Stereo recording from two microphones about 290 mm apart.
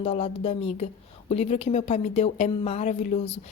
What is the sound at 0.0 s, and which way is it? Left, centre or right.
A woman's voice, centre.